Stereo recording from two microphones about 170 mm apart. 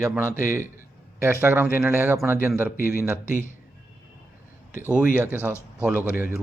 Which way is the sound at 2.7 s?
55° left (ahead or behind).